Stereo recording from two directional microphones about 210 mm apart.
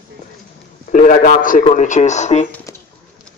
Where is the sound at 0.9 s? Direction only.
40° left (ahead or behind).